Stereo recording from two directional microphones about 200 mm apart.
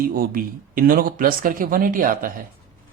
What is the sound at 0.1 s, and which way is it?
Speech, 45° right (ahead or behind).